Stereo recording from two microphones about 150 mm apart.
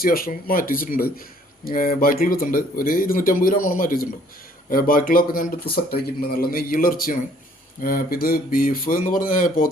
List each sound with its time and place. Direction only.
0.0 s speech: 75° left (ahead or behind)
5.7 s speech: 90° left; by 9.6 s 65° left (ahead or behind)